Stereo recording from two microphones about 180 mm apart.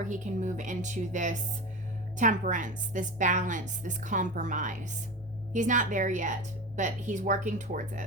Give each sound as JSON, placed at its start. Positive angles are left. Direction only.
{"t": 0.0, "sound": "a woman's voice", "side_deg": -45}